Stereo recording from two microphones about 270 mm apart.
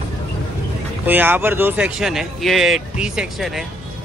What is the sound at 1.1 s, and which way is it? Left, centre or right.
Speech, centre.